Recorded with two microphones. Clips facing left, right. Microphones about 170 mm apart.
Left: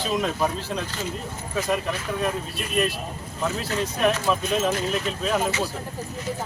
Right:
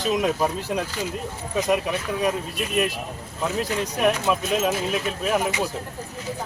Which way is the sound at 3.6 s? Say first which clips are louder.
Even; 10° right (ahead or behind).